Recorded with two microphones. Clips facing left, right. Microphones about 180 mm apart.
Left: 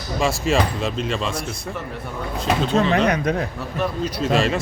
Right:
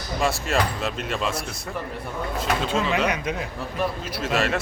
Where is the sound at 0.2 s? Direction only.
Centre (ahead or behind).